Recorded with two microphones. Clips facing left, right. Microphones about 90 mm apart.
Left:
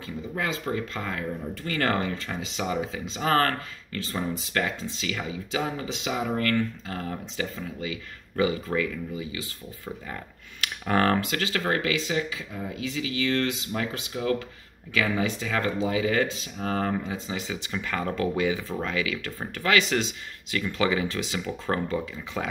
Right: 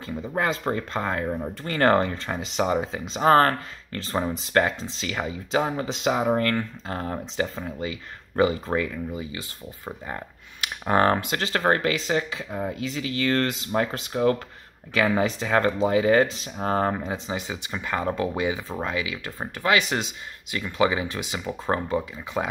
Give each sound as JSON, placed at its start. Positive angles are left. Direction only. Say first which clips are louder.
{"t": 0.0, "sound": "speech", "louder": "right 5 dB", "side_deg": -35}
{"t": 10.6, "sound": "speech", "louder": "right 3 dB", "side_deg": -25}